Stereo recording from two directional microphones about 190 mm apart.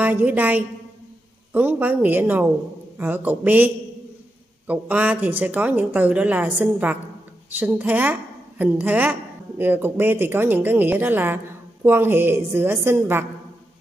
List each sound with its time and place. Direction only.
0.0 s a woman's voice: 10° right (ahead or behind)